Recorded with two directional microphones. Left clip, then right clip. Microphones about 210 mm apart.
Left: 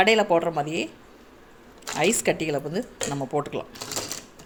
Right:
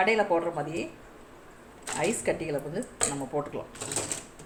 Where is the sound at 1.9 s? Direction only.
55° left (ahead or behind).